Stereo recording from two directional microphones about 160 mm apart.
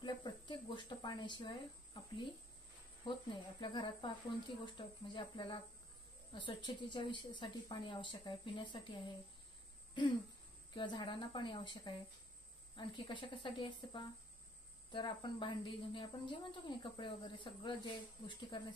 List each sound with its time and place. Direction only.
0.0 s a sound: 30° left (ahead or behind)
3.0 s a woman's voice: 30° left (ahead or behind)
10.7 s a woman's voice: 30° left (ahead or behind)